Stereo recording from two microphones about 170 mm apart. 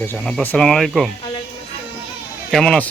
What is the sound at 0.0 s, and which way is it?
Speech, 10° left (ahead or behind).